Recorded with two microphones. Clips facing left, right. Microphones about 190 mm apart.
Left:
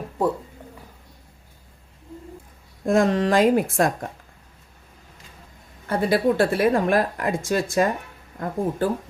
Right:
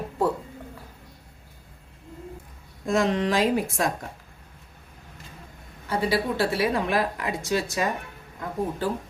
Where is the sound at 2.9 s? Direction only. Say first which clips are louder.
Left 4 dB; 50° left (ahead or behind).